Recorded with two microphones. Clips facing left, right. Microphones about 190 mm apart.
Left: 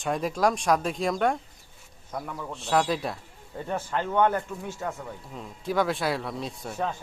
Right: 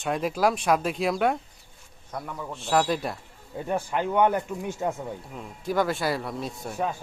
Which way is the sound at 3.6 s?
15° right (ahead or behind).